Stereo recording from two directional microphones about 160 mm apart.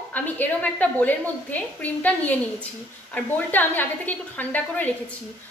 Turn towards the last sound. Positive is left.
turn(degrees=10)  # may be behind; listen again after turning